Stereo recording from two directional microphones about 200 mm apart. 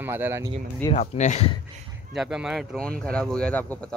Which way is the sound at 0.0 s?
10° right (ahead or behind).